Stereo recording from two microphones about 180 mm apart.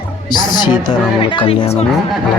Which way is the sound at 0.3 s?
25° left (ahead or behind).